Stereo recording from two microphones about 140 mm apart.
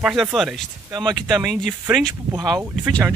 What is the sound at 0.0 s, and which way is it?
Speech, centre (ahead or behind).